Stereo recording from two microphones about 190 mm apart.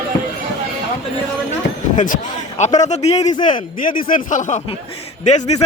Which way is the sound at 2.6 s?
40° left (ahead or behind).